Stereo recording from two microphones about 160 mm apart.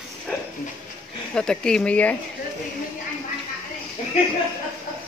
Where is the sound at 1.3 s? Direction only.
5° left (ahead or behind).